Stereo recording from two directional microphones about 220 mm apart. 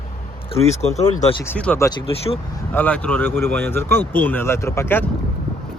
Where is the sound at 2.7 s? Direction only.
5° left (ahead or behind).